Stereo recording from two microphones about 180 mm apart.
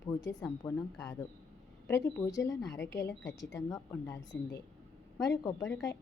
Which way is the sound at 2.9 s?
70° left (ahead or behind).